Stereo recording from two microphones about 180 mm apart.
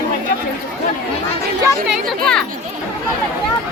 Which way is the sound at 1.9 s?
5° left (ahead or behind).